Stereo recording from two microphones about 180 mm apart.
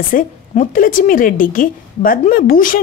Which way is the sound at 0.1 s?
50° left (ahead or behind).